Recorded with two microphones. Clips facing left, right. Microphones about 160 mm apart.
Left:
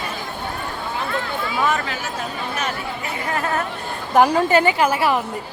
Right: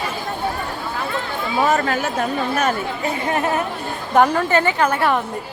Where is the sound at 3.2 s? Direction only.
25° right (ahead or behind).